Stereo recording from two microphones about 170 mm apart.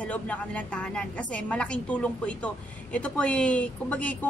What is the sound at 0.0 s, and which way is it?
A woman's voice, 10° left (ahead or behind).